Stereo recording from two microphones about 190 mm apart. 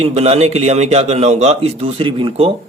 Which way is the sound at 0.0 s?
35° right (ahead or behind).